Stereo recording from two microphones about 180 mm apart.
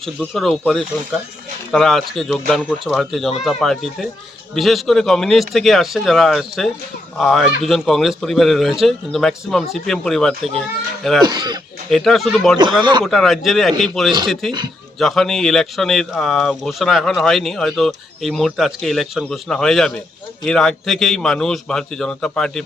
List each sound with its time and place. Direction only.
0.0 s speech: centre (ahead or behind)
11.2 s speech: 25° right (ahead or behind)
11.9 s speech: centre (ahead or behind)
12.8 s speech: 25° right (ahead or behind)
13.1 s speech: centre (ahead or behind)